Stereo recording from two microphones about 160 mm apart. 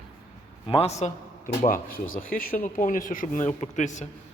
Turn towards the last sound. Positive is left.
turn(degrees=50)  # may be behind; listen again after turning